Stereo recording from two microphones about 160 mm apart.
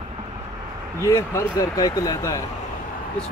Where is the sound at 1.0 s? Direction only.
20° left (ahead or behind).